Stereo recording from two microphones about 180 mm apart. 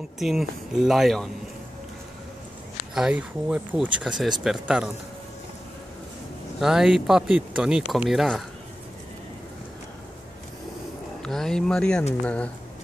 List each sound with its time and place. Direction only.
0.2 s speech: centre (ahead or behind)
2.9 s speech: 5° right (ahead or behind)
6.6 s speech: 5° right (ahead or behind)
11.2 s speech: centre (ahead or behind)